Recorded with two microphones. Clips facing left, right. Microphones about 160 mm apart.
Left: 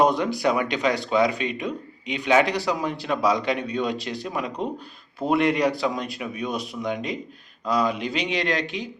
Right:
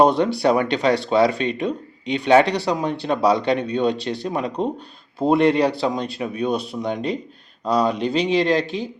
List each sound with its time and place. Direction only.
0.0 s speech: 30° right (ahead or behind)